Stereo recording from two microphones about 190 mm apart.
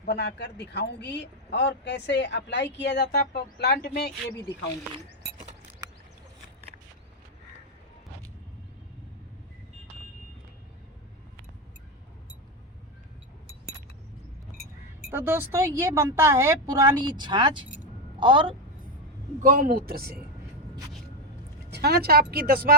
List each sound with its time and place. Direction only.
0.0 s speech: 60° left (ahead or behind)
15.1 s a woman's voice: 10° right (ahead or behind)
19.4 s speech: 45° right (ahead or behind)
21.7 s speech: 55° right (ahead or behind)